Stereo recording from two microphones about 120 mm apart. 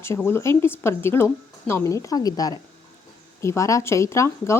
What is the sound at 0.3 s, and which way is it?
Speech, 20° left (ahead or behind).